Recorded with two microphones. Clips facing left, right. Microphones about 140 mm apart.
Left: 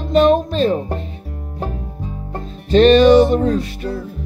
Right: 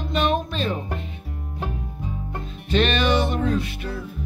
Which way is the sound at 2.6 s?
35° left (ahead or behind).